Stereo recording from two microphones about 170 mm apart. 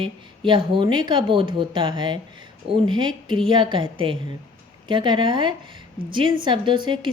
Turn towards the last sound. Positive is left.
turn(degrees=-30)  # may be behind; listen again after turning